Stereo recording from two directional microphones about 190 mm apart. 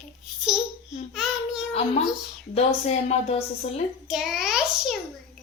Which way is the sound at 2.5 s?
35° left (ahead or behind).